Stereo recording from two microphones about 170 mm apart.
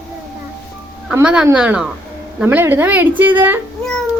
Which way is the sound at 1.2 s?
5° right (ahead or behind).